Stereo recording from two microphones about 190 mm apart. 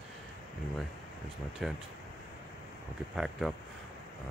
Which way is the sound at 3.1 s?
Centre (ahead or behind).